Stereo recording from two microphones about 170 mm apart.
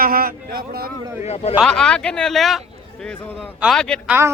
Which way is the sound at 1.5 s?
5° left (ahead or behind).